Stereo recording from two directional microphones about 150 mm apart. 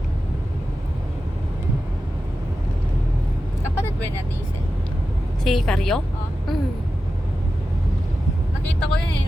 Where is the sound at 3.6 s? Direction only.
15° left (ahead or behind).